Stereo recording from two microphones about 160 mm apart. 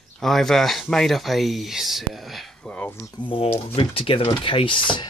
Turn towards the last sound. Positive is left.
turn(degrees=30)  # may be behind; listen again after turning